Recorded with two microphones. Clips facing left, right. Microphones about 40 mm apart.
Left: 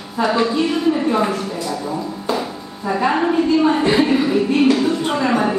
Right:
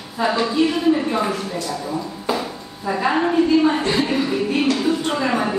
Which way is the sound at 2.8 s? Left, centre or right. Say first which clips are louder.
Left 2 dB; centre.